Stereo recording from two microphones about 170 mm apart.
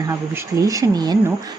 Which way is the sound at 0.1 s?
20° right (ahead or behind).